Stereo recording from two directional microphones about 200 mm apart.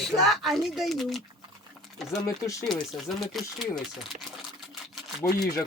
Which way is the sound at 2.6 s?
Centre (ahead or behind).